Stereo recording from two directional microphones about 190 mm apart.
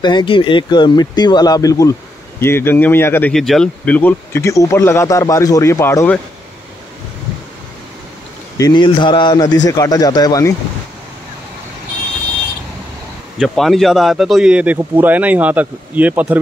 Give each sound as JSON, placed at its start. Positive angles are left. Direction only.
{"t": 0.0, "sound": "speech", "side_deg": 25}
{"t": 8.5, "sound": "speech", "side_deg": 20}
{"t": 13.4, "sound": "speech", "side_deg": 0}